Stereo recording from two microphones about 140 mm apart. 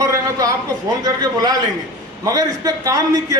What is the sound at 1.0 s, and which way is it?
A man's voice, 25° right (ahead or behind).